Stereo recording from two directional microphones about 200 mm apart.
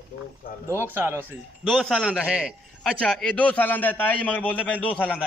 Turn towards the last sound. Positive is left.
turn(degrees=5)  # may be behind; listen again after turning